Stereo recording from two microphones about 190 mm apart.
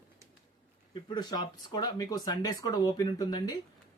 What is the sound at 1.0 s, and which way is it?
Speech, 25° left (ahead or behind).